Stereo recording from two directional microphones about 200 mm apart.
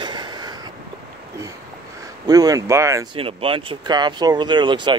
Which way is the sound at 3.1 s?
25° right (ahead or behind).